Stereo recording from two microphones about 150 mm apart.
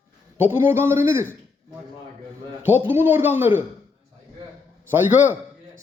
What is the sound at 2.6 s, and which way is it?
Speech, 15° right (ahead or behind).